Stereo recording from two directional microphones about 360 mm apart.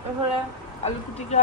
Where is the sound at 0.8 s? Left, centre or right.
Centre.